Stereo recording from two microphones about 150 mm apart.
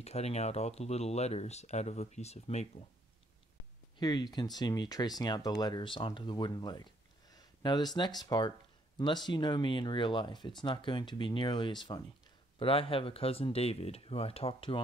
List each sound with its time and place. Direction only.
0.0 s speech: 45° left (ahead or behind)
4.0 s speech: 30° left (ahead or behind)
7.3 s a sound: 30° left (ahead or behind)
8.3 s speech: 30° left (ahead or behind)